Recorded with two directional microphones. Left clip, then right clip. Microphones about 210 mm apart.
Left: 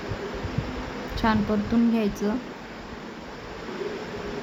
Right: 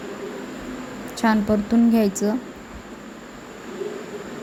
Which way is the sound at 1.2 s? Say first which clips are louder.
Right 4 dB; 20° right (ahead or behind).